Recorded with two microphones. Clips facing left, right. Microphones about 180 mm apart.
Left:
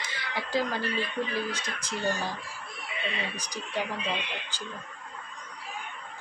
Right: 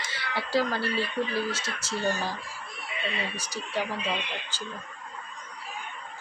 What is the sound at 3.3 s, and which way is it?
Speech, 15° left (ahead or behind).